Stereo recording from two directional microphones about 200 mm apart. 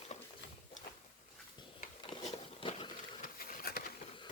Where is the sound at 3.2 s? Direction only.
45° left (ahead or behind).